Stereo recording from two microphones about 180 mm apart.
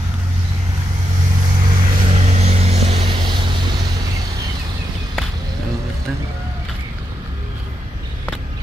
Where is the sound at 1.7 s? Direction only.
50° right (ahead or behind).